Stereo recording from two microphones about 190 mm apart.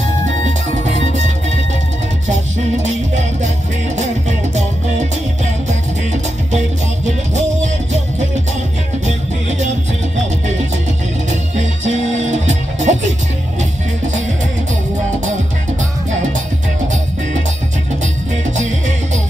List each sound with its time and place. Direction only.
0.5 s music: 40° right (ahead or behind)
3.4 s music: 40° right (ahead or behind)
7.3 s music: 40° right (ahead or behind)
11.8 s music: 40° right (ahead or behind)